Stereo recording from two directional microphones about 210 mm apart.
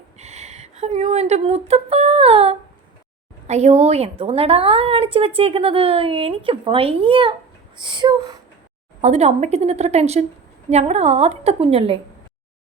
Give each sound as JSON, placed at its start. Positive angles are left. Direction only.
{"t": 0.2, "sound": "a woman's voice", "side_deg": -30}
{"t": 9.0, "sound": "a woman's voice", "side_deg": -30}